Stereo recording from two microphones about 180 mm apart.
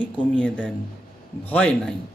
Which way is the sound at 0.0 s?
10° left (ahead or behind).